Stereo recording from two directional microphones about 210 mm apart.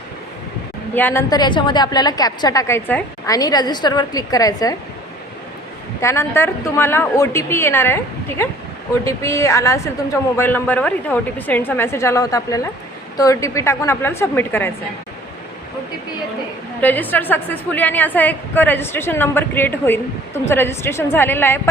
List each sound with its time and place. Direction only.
0.9 s a woman's voice: 10° left (ahead or behind)
6.0 s a woman's voice: 15° left (ahead or behind)
16.8 s a woman's voice: 10° left (ahead or behind)